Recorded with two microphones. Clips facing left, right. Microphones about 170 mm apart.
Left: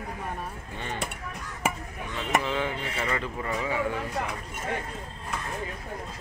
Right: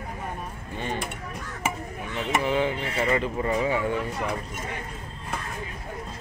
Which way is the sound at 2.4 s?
20° right (ahead or behind).